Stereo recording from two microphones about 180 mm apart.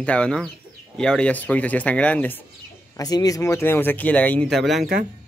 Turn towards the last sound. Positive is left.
turn(degrees=-50)  # may be behind; listen again after turning